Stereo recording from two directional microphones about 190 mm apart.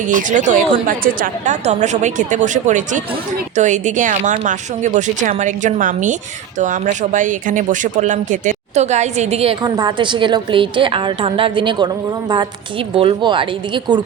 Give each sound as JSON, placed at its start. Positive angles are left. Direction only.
{"t": 0.1, "sound": "a woman's voice", "side_deg": -40}
{"t": 13.0, "sound": "speech", "side_deg": -25}